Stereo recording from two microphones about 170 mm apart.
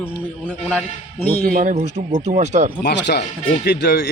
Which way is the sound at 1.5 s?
45° right (ahead or behind).